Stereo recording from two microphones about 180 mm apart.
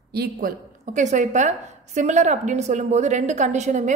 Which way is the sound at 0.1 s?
60° right (ahead or behind).